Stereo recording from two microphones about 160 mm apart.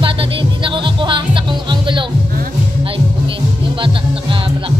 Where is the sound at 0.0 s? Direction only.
30° right (ahead or behind).